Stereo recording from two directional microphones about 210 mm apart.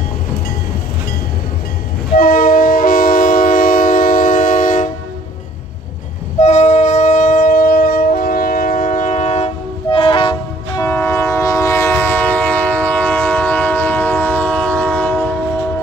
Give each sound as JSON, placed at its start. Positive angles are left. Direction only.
{"t": 2.1, "sound": "train", "side_deg": 40}
{"t": 6.4, "sound": "wind instrument", "side_deg": 35}
{"t": 10.8, "sound": "train", "side_deg": 10}